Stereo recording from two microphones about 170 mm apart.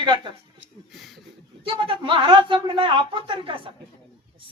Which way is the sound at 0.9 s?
Centre (ahead or behind).